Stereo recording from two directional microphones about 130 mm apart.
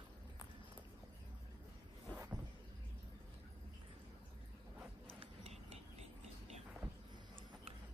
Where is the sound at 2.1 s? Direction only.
15° right (ahead or behind).